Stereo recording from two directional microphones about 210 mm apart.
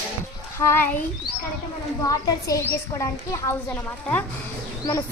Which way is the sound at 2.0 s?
15° left (ahead or behind).